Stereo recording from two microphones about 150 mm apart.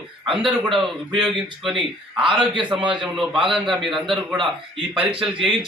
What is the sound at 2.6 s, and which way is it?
A man's voice, 5° right (ahead or behind).